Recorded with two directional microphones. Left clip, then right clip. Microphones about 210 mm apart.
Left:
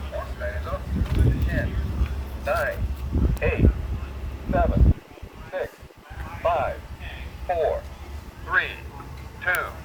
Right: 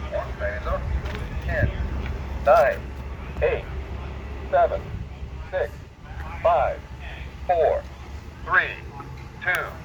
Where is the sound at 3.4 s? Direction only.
45° right (ahead or behind).